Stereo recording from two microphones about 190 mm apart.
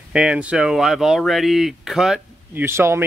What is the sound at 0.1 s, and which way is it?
Speech, 5° right (ahead or behind).